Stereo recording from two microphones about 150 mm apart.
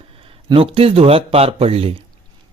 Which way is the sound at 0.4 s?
35° right (ahead or behind).